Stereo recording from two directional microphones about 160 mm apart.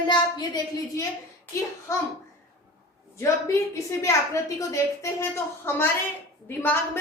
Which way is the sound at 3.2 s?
20° left (ahead or behind).